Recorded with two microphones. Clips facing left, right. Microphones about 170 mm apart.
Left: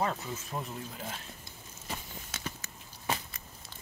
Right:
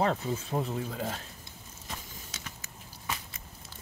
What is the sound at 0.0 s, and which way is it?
Speech, 30° right (ahead or behind).